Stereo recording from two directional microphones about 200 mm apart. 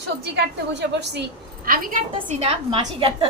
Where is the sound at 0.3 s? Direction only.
60° right (ahead or behind).